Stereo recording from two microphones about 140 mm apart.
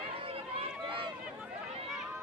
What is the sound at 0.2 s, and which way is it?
Run, 40° right (ahead or behind).